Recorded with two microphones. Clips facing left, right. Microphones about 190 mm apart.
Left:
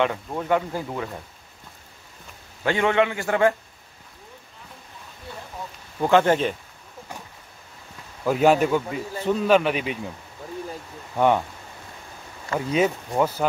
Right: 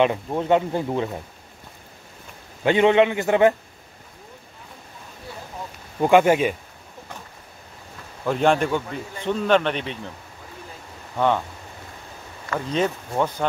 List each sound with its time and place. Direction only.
0.0 s speech: 20° right (ahead or behind)
2.6 s speech: 20° right (ahead or behind)
5.9 s speech: 15° right (ahead or behind)
8.3 s speech: 5° left (ahead or behind)
11.1 s speech: 15° left (ahead or behind)
12.5 s speech: 10° left (ahead or behind)